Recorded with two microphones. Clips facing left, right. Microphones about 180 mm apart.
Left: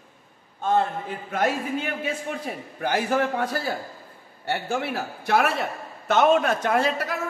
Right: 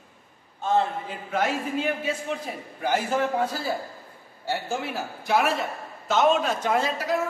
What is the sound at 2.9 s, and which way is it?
A man's voice, 65° left (ahead or behind).